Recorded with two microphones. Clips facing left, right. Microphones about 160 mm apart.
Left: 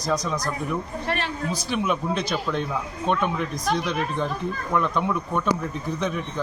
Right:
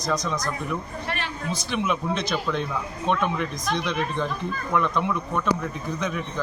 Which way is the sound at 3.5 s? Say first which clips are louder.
Left 3 dB; 35° left (ahead or behind).